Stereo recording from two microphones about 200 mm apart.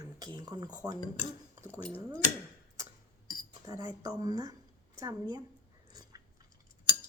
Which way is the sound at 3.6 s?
15° right (ahead or behind).